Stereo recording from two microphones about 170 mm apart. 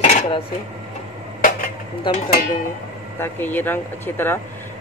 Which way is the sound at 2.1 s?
30° left (ahead or behind).